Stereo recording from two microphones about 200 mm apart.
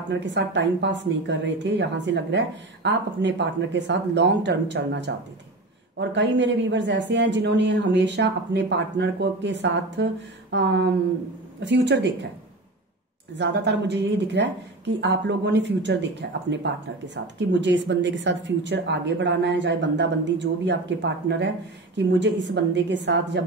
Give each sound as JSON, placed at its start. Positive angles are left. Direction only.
{"t": 0.1, "sound": "a woman's voice", "side_deg": -65}
{"t": 13.4, "sound": "a woman's voice", "side_deg": -60}